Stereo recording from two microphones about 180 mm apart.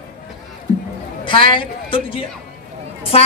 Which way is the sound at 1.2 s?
25° left (ahead or behind).